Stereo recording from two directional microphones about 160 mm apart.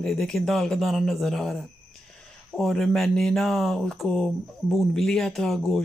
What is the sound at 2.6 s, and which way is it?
Speech, centre (ahead or behind).